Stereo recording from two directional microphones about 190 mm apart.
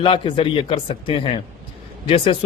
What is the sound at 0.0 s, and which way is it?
A man's voice, 25° left (ahead or behind).